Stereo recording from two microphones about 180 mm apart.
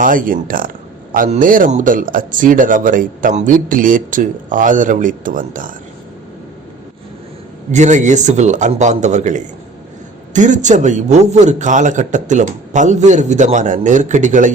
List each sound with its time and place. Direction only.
0.0 s speech: 50° right (ahead or behind)
7.7 s a man's voice: 40° right (ahead or behind)